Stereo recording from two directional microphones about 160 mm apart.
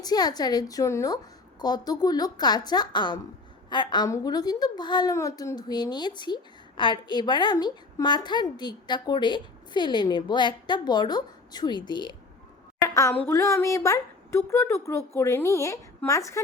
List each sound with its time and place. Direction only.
0.0 s a woman's voice: 25° left (ahead or behind)